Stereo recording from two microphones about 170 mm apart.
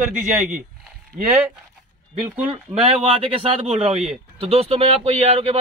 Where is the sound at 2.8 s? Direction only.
35° right (ahead or behind).